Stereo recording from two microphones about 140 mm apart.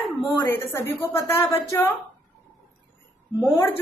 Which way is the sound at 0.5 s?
15° left (ahead or behind).